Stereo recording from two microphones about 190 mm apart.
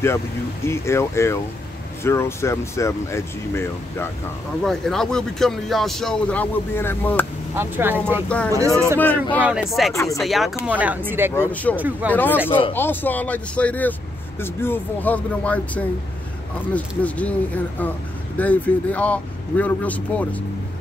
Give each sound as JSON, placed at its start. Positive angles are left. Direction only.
{"t": 0.7, "sound": "speech", "side_deg": 15}
{"t": 4.6, "sound": "speech", "side_deg": 0}
{"t": 7.5, "sound": "speech", "side_deg": -10}
{"t": 8.3, "sound": "speech", "side_deg": 5}
{"t": 8.5, "sound": "speech", "side_deg": -15}
{"t": 9.0, "sound": "speech", "side_deg": 10}
{"t": 11.3, "sound": "speech", "side_deg": 10}
{"t": 11.7, "sound": "speech", "side_deg": -10}
{"t": 12.1, "sound": "speech", "side_deg": 10}